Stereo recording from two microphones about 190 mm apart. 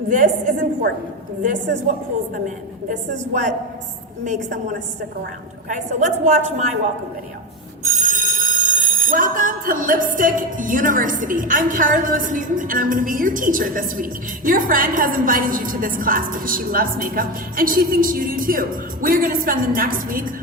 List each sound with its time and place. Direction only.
0.1 s speech: 45° right (ahead or behind)
2.9 s a woman's voice: 40° right (ahead or behind)
5.6 s a woman's voice: 40° right (ahead or behind)
7.9 s speech: 40° right (ahead or behind)